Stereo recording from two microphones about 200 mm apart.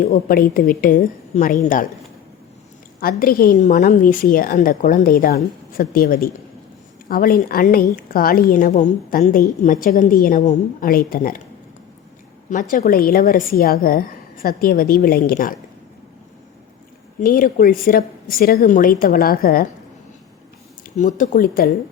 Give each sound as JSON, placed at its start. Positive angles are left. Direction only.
{"t": 0.0, "sound": "a woman's voice", "side_deg": 45}
{"t": 3.0, "sound": "a woman's voice", "side_deg": 45}
{"t": 12.5, "sound": "a woman's voice", "side_deg": 40}
{"t": 17.2, "sound": "a woman's voice", "side_deg": 45}
{"t": 20.9, "sound": "a woman's voice", "side_deg": 40}